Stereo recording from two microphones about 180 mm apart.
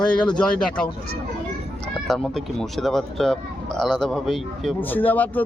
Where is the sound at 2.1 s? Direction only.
Centre (ahead or behind).